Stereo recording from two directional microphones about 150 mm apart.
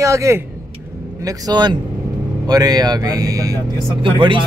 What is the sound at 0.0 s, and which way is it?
Speech, 20° right (ahead or behind).